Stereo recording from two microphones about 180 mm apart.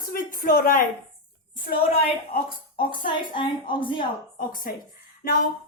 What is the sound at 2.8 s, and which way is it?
A woman's voice, 30° left (ahead or behind).